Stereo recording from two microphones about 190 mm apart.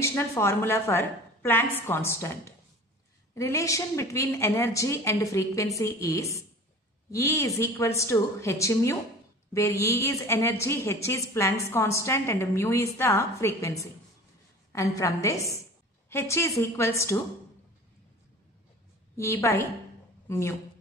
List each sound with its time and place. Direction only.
0.0 s a woman's voice: 15° left (ahead or behind)
19.1 s a woman's voice: 15° left (ahead or behind)